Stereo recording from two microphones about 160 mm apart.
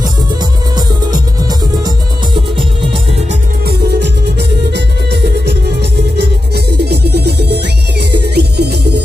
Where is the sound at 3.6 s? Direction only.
90° right.